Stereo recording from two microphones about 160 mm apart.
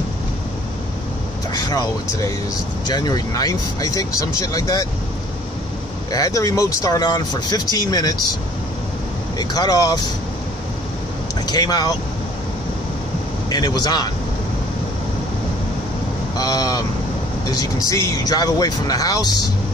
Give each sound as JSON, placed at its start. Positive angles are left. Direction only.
{"t": 1.5, "sound": "speech", "side_deg": 20}
{"t": 6.1, "sound": "speech", "side_deg": 20}
{"t": 9.4, "sound": "speech", "side_deg": 25}
{"t": 11.4, "sound": "speech", "side_deg": 25}
{"t": 13.5, "sound": "speech", "side_deg": 25}
{"t": 16.3, "sound": "speech", "side_deg": 25}